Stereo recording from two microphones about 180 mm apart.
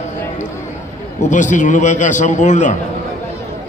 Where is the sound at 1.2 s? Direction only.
45° left (ahead or behind).